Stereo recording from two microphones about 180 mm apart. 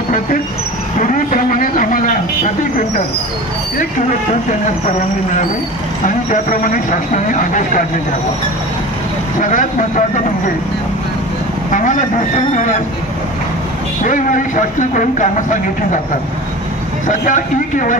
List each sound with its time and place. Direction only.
1.0 s speech: 45° left (ahead or behind)
6.0 s speech: 45° left (ahead or behind)
9.4 s speech: 45° left (ahead or behind)
11.7 s speech: 45° left (ahead or behind)
14.0 s speech: 45° left (ahead or behind)
17.1 s speech: 45° left (ahead or behind)